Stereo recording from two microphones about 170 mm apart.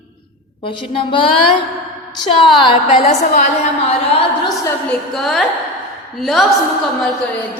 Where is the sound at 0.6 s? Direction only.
30° left (ahead or behind).